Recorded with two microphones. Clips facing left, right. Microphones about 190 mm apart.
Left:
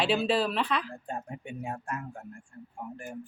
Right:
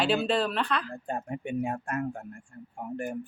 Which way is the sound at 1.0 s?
60° right (ahead or behind).